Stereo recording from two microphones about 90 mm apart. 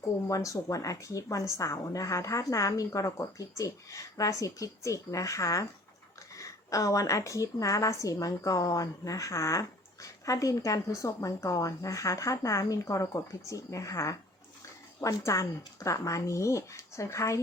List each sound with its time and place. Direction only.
0.3 s a woman's voice: 40° left (ahead or behind)